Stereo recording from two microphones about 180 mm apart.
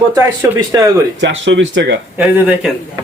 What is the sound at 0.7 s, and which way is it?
Speech, 20° right (ahead or behind).